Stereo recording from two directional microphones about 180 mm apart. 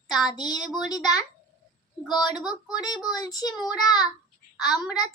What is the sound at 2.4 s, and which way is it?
Speech, centre (ahead or behind).